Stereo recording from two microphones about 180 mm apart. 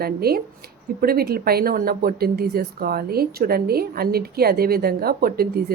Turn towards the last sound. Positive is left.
turn(degrees=-55)  # may be behind; listen again after turning